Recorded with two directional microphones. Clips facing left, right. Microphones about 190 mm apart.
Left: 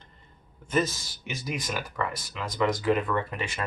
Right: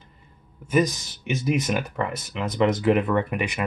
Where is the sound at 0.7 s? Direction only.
15° right (ahead or behind).